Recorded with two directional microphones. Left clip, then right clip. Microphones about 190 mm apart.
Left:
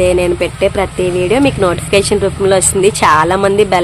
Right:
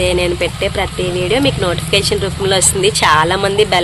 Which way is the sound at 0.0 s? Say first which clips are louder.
Left 3 dB; 40° left (ahead or behind).